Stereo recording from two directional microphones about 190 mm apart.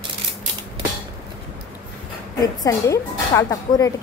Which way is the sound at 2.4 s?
15° left (ahead or behind).